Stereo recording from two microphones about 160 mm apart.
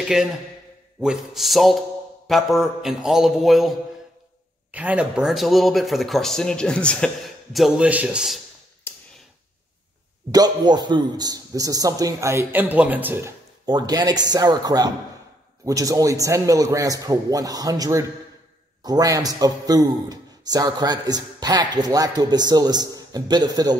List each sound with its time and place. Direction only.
1.0 s a man's voice: centre (ahead or behind)
10.3 s a man's voice: 25° right (ahead or behind)
13.7 s a man's voice: 25° right (ahead or behind)